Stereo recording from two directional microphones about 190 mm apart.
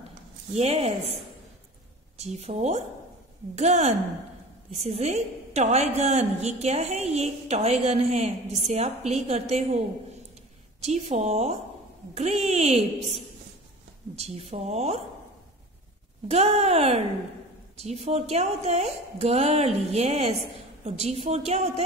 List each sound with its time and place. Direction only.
0.6 s a woman's voice: 30° right (ahead or behind)
2.1 s a woman's voice: 35° right (ahead or behind)
10.8 s a woman's voice: 35° right (ahead or behind)
16.3 s a woman's voice: 35° right (ahead or behind)